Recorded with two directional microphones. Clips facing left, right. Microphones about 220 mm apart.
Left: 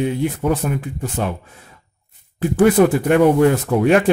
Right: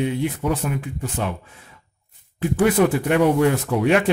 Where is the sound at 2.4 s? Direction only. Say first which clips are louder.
Left 4 dB; 40° left (ahead or behind).